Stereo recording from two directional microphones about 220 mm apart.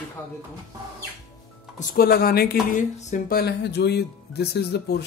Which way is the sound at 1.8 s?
45° left (ahead or behind).